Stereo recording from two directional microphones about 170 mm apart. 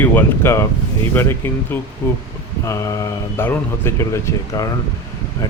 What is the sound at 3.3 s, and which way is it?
Speech, 15° left (ahead or behind).